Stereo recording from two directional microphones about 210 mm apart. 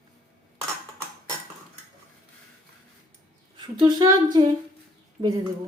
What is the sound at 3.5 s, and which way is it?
Speech, 20° right (ahead or behind).